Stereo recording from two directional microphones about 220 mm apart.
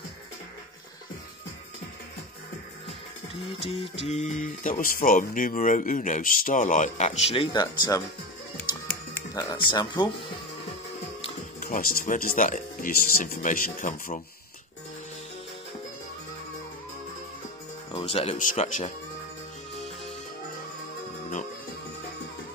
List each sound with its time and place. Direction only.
3.5 s music: 25° left (ahead or behind)
4.0 s speech: 30° left (ahead or behind)
9.3 s speech: 15° left (ahead or behind)
11.6 s speech: 40° left (ahead or behind)
17.9 s speech: 25° left (ahead or behind)